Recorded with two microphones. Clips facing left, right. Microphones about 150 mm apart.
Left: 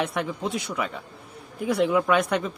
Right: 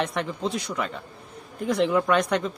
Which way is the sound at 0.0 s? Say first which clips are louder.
Even; 5° left (ahead or behind).